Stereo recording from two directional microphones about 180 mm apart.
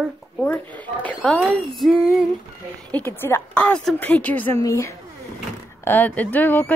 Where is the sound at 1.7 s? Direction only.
Centre (ahead or behind).